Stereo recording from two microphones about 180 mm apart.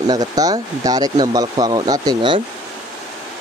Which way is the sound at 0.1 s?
20° right (ahead or behind).